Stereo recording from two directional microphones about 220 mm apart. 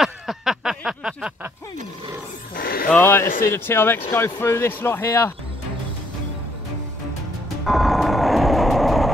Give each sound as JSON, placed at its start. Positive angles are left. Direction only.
{"t": 0.0, "sound": "a sound", "side_deg": 0}
{"t": 2.5, "sound": "speech", "side_deg": 45}
{"t": 2.9, "sound": "speech", "side_deg": 10}
{"t": 7.6, "sound": "vehicle", "side_deg": 0}